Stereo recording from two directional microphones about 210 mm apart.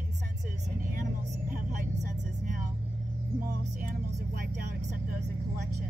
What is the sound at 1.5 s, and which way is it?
Vehicle, 40° right (ahead or behind).